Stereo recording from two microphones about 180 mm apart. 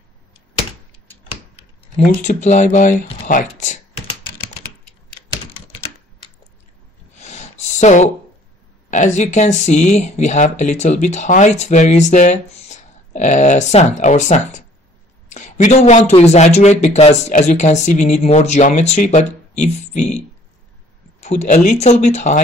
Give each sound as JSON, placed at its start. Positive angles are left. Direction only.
{"t": 2.0, "sound": "speech", "side_deg": 40}
{"t": 7.2, "sound": "a sound", "side_deg": 40}
{"t": 8.9, "sound": "speech", "side_deg": 40}
{"t": 21.2, "sound": "speech", "side_deg": 40}